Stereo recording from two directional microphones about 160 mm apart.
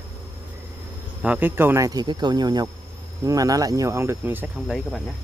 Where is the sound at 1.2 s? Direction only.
10° right (ahead or behind).